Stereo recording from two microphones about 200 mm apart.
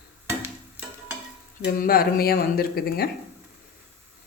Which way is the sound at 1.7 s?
50° left (ahead or behind).